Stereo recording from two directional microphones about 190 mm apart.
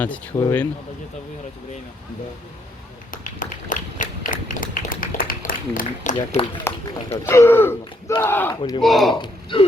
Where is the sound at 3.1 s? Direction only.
45° left (ahead or behind).